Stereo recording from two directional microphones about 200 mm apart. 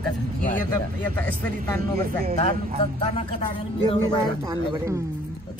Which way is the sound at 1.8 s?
45° right (ahead or behind).